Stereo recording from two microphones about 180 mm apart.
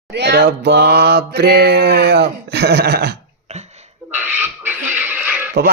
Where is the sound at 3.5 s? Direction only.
40° right (ahead or behind).